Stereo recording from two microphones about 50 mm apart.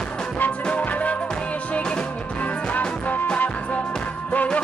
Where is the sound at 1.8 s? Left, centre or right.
Centre.